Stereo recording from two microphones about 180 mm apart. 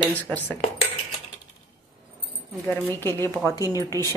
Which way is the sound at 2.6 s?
15° left (ahead or behind).